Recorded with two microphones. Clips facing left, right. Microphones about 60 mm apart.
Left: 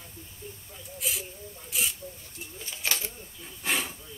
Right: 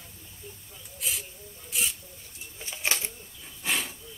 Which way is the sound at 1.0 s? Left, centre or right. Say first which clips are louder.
Left 1 dB; centre.